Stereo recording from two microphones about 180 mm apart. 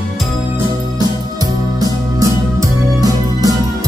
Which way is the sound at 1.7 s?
20° right (ahead or behind).